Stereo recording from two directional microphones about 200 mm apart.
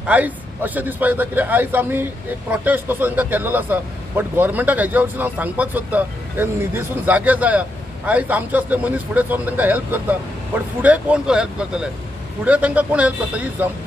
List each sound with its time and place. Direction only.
0.0 s speech: 10° right (ahead or behind)